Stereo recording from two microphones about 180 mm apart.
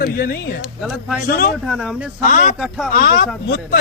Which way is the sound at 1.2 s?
55° left (ahead or behind).